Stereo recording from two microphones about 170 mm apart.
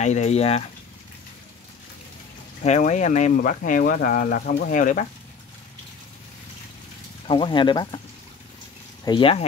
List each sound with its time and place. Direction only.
0.0 s speech: 45° left (ahead or behind)
2.6 s speech: 45° left (ahead or behind)
7.2 s speech: 30° left (ahead or behind)
9.0 s speech: 30° left (ahead or behind)